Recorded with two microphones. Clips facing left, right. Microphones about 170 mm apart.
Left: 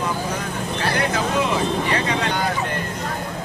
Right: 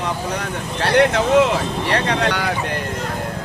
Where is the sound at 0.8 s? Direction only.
75° right (ahead or behind).